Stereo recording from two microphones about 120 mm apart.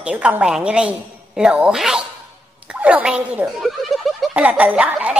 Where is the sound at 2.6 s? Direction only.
10° right (ahead or behind).